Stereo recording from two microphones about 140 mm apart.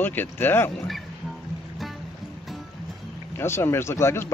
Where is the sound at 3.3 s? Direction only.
15° left (ahead or behind).